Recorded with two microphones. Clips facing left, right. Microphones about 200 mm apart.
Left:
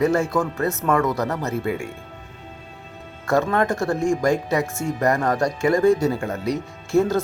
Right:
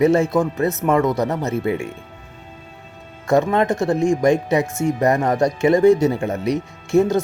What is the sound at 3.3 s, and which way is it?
Speech, 20° right (ahead or behind).